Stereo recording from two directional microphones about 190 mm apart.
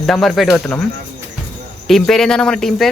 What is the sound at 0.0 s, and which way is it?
Speech, centre (ahead or behind).